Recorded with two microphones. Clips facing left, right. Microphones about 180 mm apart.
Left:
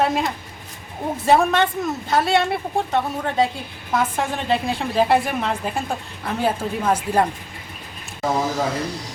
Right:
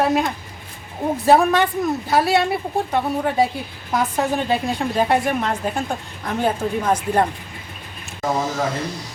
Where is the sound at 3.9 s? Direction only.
Centre (ahead or behind).